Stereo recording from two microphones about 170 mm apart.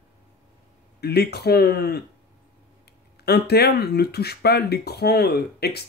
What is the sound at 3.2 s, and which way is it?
Speech, 70° left (ahead or behind).